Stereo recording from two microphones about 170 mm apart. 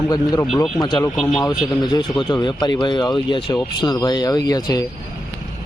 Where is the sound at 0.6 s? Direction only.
25° left (ahead or behind).